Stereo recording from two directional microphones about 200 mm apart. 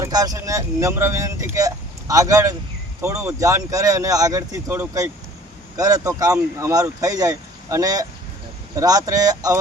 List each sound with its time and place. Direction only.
0.0 s speech: 20° right (ahead or behind)